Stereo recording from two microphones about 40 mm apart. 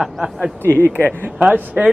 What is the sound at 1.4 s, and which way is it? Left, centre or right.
Speech, right.